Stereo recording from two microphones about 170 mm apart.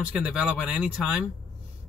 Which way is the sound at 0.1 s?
5° right (ahead or behind).